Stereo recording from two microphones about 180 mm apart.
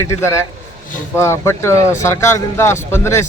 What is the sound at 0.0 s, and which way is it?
Speech, 15° left (ahead or behind).